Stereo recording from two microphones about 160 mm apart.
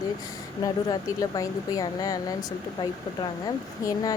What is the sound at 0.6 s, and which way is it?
Speech, 20° left (ahead or behind).